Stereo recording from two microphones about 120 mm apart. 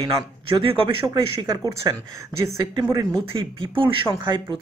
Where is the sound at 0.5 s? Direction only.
50° right (ahead or behind).